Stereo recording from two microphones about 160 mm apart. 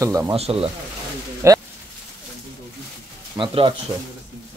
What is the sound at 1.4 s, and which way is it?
Speech, 20° right (ahead or behind).